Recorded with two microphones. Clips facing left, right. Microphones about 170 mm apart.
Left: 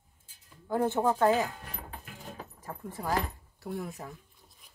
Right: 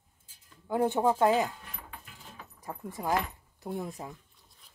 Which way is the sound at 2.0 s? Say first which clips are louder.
Left 7 dB; 55° left (ahead or behind).